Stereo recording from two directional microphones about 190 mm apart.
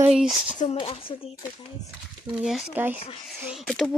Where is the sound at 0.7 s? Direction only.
30° left (ahead or behind).